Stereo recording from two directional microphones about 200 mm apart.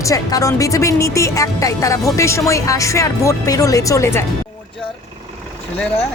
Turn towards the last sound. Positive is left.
turn(degrees=15)  # may be behind; listen again after turning